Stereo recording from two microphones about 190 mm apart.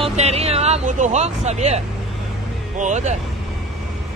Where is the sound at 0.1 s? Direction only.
35° right (ahead or behind).